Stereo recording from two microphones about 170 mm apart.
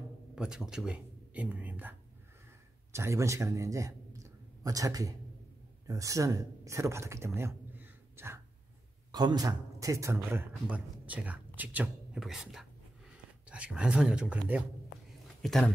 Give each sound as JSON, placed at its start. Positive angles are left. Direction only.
{"t": 0.4, "sound": "a man's voice", "side_deg": -5}